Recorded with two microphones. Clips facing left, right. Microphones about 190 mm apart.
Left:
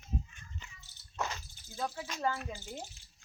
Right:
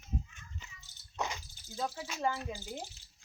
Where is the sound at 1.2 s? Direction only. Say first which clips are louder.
Even; 15° right (ahead or behind).